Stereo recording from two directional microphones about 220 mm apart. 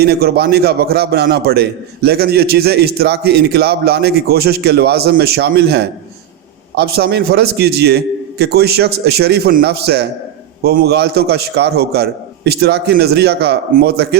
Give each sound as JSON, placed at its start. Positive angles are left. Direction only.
{"t": 0.0, "sound": "a man's voice", "side_deg": -45}